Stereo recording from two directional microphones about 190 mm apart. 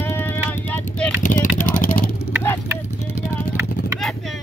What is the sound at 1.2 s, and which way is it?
Vehicle, 45° left (ahead or behind).